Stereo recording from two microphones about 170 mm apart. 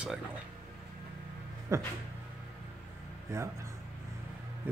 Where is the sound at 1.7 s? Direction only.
20° right (ahead or behind).